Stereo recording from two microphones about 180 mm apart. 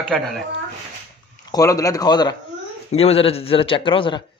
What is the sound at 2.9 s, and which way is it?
A man's voice, 35° left (ahead or behind).